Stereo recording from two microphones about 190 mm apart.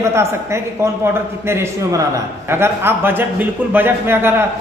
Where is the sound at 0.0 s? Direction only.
15° right (ahead or behind).